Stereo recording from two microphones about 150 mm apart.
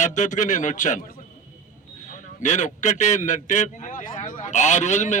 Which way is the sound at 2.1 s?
55° left (ahead or behind).